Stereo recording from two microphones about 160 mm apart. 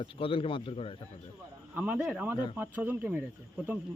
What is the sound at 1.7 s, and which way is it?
Speech, 10° right (ahead or behind).